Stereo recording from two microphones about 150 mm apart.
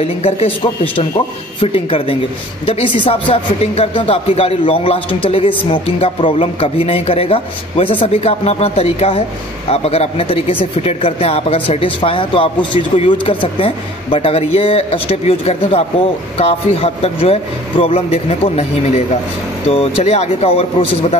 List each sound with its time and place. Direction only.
0.0 s a man's voice: 40° left (ahead or behind)